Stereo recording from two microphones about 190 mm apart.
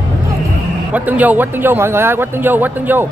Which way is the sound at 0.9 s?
10° right (ahead or behind).